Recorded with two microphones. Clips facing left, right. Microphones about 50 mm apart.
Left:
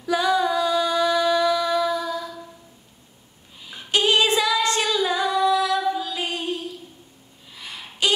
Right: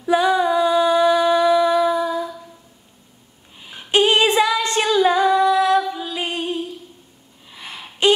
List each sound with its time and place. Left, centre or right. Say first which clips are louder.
0.0 s female singing: right 4 dB; right
3.6 s female singing: right 5 dB; right
5.9 s music: left 1 dB; right
7.5 s a sound: right 2 dB; right